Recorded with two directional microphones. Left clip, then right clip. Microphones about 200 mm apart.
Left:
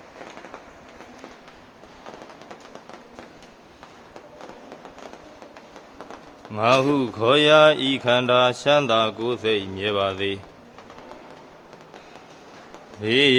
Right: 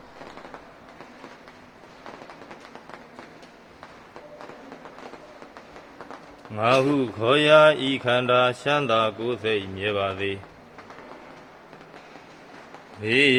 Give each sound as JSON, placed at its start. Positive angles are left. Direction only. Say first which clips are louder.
{"t": 6.5, "sound": "speech", "louder": "left 2 dB", "side_deg": 15}
{"t": 13.0, "sound": "speech", "louder": "left 1 dB", "side_deg": 25}